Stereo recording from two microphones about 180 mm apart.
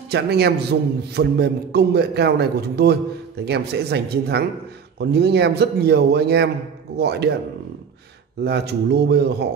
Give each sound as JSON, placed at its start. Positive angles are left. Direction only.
{"t": 0.1, "sound": "a man's voice", "side_deg": -65}
{"t": 8.5, "sound": "a man's voice", "side_deg": -65}